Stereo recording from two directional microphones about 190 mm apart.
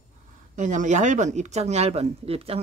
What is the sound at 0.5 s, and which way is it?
Speech, 40° right (ahead or behind).